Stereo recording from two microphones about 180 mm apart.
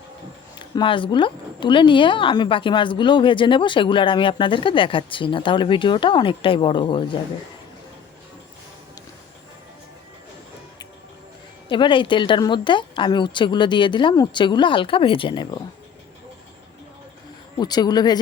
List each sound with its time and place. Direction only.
0.8 s a woman's voice: 25° left (ahead or behind)
11.7 s a woman's voice: 25° left (ahead or behind)
17.6 s a woman's voice: 20° left (ahead or behind)